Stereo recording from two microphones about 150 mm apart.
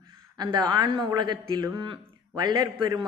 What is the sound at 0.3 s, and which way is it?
A man's voice, 30° right (ahead or behind).